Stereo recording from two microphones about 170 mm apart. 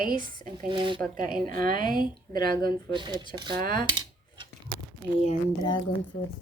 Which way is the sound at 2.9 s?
25° right (ahead or behind).